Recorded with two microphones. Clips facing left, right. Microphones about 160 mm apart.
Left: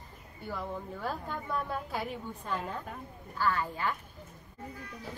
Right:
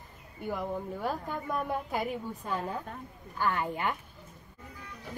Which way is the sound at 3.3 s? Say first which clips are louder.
Right 1 dB; 20° right (ahead or behind).